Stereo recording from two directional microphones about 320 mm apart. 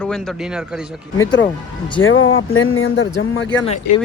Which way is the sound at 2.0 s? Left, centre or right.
Left.